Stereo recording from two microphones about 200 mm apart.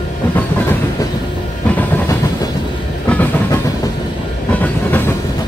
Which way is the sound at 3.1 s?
10° left (ahead or behind).